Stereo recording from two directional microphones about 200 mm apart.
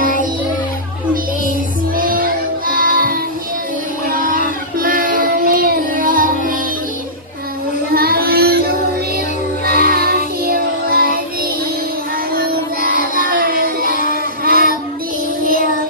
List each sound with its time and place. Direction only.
2.0 s music: 45° right (ahead or behind)
4.1 s child singing: 45° right (ahead or behind)
7.9 s child singing: 50° right (ahead or behind)
9.8 s music: 45° right (ahead or behind)
13.3 s music: 45° right (ahead or behind)
14.4 s child singing: 45° right (ahead or behind)
15.4 s music: 45° right (ahead or behind)